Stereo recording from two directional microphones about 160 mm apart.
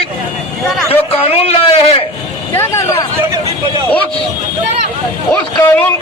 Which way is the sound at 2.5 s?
15° left (ahead or behind).